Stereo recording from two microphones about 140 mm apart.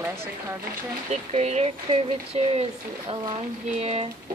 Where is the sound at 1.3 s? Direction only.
50° right (ahead or behind).